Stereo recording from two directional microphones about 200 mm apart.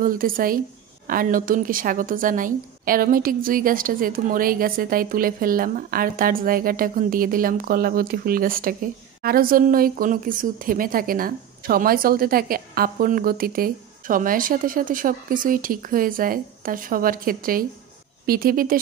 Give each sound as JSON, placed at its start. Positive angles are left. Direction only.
{"t": 0.0, "sound": "speech", "side_deg": -45}